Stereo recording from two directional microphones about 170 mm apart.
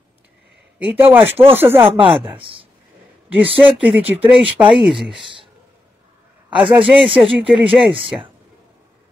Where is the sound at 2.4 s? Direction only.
30° right (ahead or behind).